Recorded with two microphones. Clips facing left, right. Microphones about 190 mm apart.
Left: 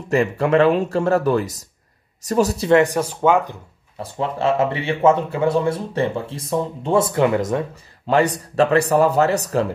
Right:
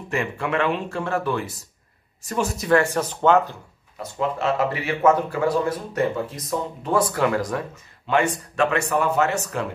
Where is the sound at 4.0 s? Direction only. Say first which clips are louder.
Left 2 dB; 30° left (ahead or behind).